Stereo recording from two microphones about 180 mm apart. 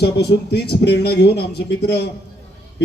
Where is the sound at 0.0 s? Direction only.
65° left (ahead or behind).